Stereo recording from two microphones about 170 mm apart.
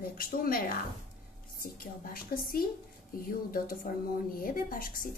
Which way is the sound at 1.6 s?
60° left (ahead or behind).